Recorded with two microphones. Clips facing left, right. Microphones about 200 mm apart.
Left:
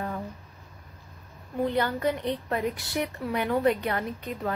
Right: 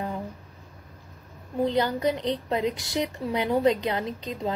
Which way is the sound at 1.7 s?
15° right (ahead or behind).